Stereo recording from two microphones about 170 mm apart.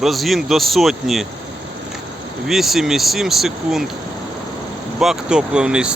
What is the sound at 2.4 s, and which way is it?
Speech, centre (ahead or behind).